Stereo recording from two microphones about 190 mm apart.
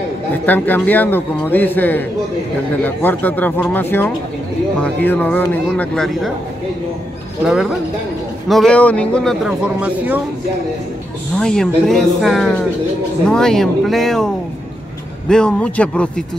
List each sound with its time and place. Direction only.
0.3 s a man's voice: 10° left (ahead or behind)
7.4 s a man's voice: 5° right (ahead or behind)
11.3 s a man's voice: 5° left (ahead or behind)